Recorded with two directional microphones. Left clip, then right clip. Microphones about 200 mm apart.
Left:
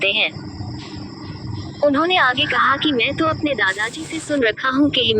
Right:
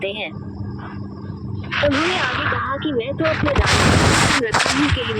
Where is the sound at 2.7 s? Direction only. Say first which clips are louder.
Left 5 dB; 55° left (ahead or behind).